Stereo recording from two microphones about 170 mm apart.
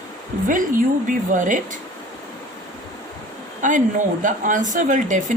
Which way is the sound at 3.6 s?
50° right (ahead or behind).